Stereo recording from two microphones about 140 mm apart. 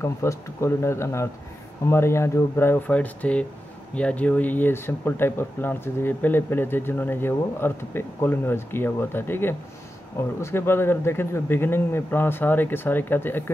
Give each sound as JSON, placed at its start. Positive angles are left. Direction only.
{"t": 0.0, "sound": "speech", "side_deg": 20}